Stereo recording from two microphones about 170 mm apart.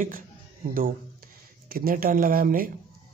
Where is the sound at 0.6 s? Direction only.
50° right (ahead or behind).